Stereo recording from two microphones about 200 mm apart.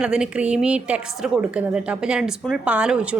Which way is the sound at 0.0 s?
5° right (ahead or behind).